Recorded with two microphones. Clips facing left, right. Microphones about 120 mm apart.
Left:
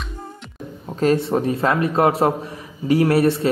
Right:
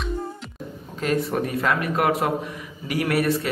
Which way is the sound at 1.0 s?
30° left (ahead or behind).